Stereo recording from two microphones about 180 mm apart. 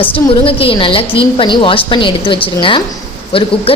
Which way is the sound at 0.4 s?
30° left (ahead or behind).